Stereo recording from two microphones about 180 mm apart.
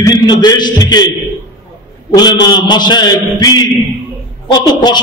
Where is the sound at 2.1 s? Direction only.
25° left (ahead or behind).